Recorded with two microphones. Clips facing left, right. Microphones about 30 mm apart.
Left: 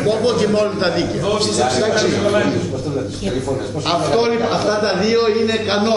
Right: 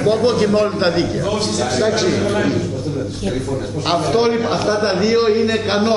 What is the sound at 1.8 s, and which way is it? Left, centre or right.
Speech, centre.